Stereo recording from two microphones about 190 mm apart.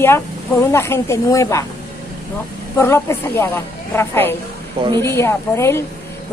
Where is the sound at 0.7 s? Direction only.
15° left (ahead or behind).